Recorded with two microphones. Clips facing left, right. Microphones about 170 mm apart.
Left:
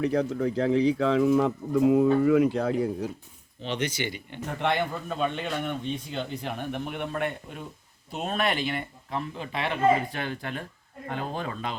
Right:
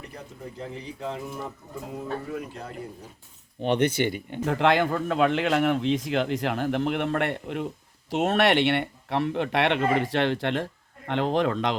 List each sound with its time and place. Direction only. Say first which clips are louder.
0.0 s speech: left 15 dB; 90° left
3.6 s speech: right 7 dB; 55° right (ahead or behind)
4.4 s a man's voice: right 5 dB; 90° right